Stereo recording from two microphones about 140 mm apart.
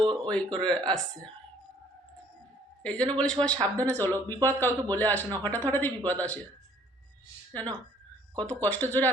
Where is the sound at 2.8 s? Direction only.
5° left (ahead or behind).